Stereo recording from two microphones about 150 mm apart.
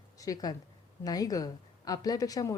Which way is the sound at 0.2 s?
25° left (ahead or behind).